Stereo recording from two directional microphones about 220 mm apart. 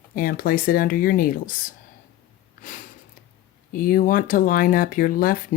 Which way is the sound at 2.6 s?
35° left (ahead or behind).